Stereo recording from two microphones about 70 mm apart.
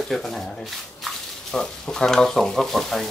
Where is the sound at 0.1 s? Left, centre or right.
Centre.